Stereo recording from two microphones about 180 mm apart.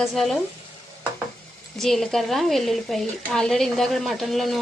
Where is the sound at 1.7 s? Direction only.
Centre (ahead or behind).